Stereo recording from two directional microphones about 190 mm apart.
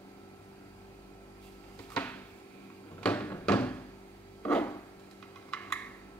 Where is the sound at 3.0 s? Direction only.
10° left (ahead or behind).